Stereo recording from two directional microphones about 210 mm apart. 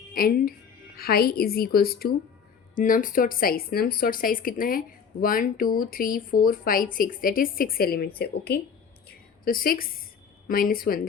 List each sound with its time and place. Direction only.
0.1 s speech: 45° left (ahead or behind)
9.0 s a sound: 45° left (ahead or behind)
10.5 s speech: 45° left (ahead or behind)